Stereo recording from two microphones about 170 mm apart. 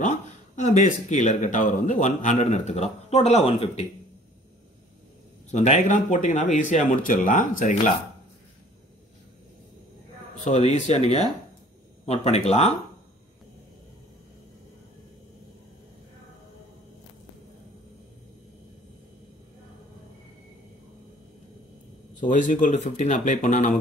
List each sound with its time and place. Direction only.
0.0 s a sound: 45° left (ahead or behind)
1.4 s a man's voice: 50° left (ahead or behind)
5.5 s speech: 45° left (ahead or behind)
10.4 s a man's voice: 45° left (ahead or behind)
22.2 s speech: 50° left (ahead or behind)